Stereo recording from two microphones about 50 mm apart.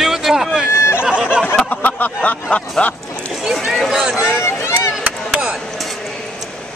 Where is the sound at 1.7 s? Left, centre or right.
Left.